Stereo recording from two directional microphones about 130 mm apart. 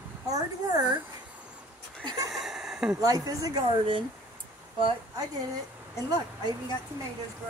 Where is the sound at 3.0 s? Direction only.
30° right (ahead or behind).